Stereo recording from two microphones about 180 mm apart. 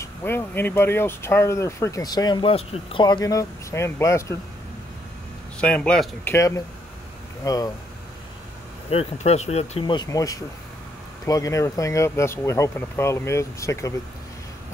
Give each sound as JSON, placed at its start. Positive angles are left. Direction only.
{"t": 0.0, "sound": "speech", "side_deg": 10}
{"t": 5.6, "sound": "speech", "side_deg": 5}
{"t": 8.9, "sound": "speech", "side_deg": 35}
{"t": 10.0, "sound": "speech", "side_deg": 20}